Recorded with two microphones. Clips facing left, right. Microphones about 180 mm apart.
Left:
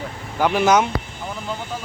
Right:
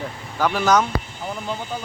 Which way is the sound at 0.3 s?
20° left (ahead or behind).